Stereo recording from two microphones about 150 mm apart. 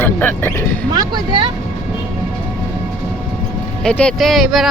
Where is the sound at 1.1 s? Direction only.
35° right (ahead or behind).